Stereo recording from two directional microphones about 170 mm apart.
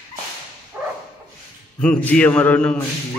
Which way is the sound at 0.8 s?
5° right (ahead or behind).